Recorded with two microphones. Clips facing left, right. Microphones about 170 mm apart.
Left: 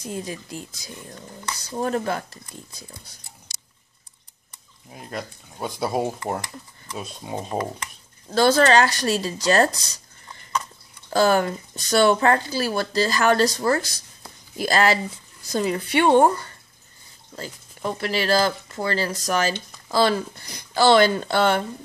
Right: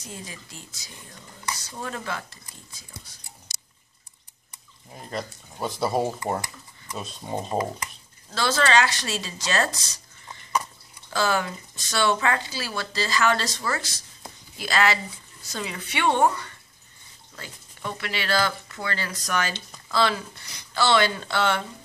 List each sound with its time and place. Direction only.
0.0 s speech: 50° left (ahead or behind)
4.9 s speech: 5° left (ahead or behind)
8.4 s speech: 50° left (ahead or behind)
11.1 s speech: 50° left (ahead or behind)